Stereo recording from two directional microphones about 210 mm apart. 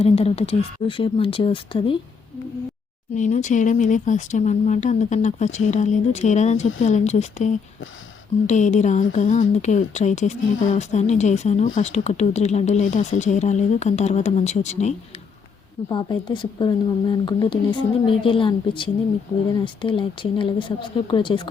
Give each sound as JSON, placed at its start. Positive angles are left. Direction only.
{"t": 0.0, "sound": "speech", "side_deg": 30}
{"t": 3.2, "sound": "speech", "side_deg": 35}
{"t": 15.9, "sound": "speech", "side_deg": 20}